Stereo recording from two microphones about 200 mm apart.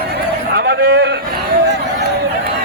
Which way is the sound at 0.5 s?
55° right (ahead or behind).